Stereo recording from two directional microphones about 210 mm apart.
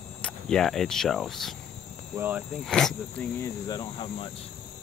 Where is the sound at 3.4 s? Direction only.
20° left (ahead or behind).